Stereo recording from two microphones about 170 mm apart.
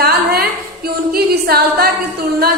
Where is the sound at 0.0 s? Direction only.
65° right (ahead or behind).